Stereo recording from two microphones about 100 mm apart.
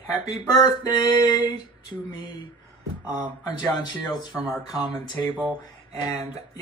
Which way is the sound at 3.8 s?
45° left (ahead or behind).